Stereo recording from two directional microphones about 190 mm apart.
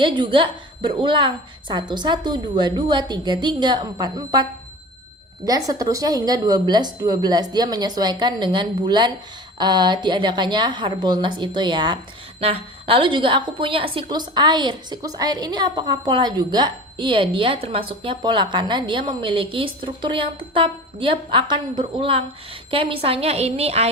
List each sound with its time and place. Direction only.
0.0 s a woman's voice: 25° right (ahead or behind)
5.5 s a woman's voice: 20° right (ahead or behind)